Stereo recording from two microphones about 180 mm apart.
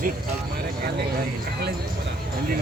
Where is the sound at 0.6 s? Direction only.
60° right (ahead or behind).